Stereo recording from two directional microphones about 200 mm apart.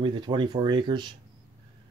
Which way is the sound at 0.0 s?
25° right (ahead or behind).